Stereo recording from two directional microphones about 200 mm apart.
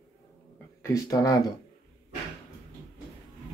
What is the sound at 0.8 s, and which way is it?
Speech, 15° left (ahead or behind).